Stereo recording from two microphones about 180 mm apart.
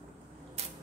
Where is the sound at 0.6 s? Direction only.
35° right (ahead or behind).